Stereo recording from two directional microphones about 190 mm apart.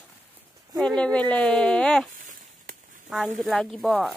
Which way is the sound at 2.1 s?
40° right (ahead or behind).